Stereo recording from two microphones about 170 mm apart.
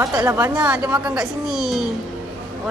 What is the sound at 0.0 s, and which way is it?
Speech, 20° right (ahead or behind).